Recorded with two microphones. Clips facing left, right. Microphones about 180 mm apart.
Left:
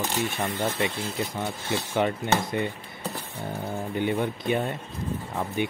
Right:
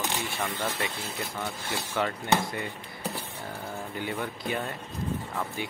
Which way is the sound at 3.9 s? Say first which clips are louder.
Left 8 dB; 20° left (ahead or behind).